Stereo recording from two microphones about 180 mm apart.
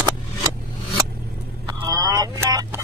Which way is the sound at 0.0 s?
15° right (ahead or behind).